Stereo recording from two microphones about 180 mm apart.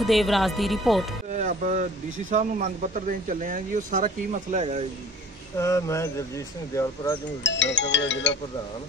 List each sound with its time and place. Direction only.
0.0 s speech: centre (ahead or behind)
1.3 s music: 45° right (ahead or behind)
2.3 s speech: 45° right (ahead or behind)
5.6 s speech: 15° left (ahead or behind)
7.4 s speech: 90° left